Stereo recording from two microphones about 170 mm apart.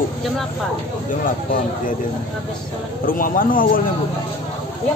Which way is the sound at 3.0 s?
55° left (ahead or behind).